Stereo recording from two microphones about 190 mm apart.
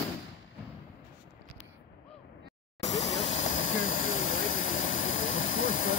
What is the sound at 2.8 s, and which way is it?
Vehicle, 35° left (ahead or behind).